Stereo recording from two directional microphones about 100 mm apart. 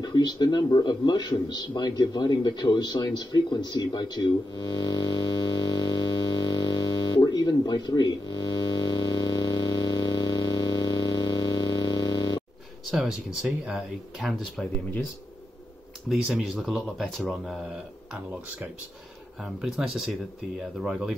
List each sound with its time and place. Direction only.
0.0 s a man's voice: 45° left (ahead or behind)
12.9 s speech: 5° right (ahead or behind)
16.1 s speech: 10° right (ahead or behind)
19.4 s speech: 5° right (ahead or behind)